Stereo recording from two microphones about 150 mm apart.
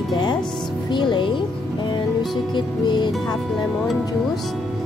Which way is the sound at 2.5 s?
30° left (ahead or behind).